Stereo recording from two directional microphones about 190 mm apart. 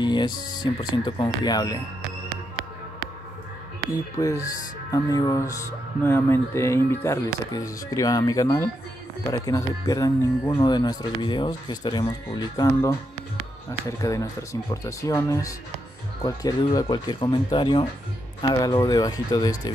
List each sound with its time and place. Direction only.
0.0 s speech: 25° left (ahead or behind)
3.9 s speech: 15° left (ahead or behind)